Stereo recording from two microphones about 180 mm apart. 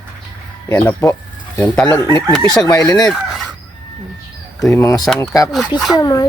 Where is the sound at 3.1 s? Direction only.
Centre (ahead or behind).